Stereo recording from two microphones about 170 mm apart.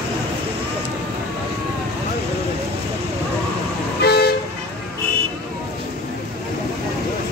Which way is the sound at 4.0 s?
70° left (ahead or behind).